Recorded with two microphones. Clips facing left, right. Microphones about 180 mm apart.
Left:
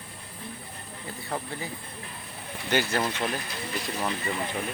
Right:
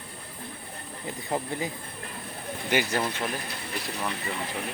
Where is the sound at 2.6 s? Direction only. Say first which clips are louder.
Even; 15° right (ahead or behind).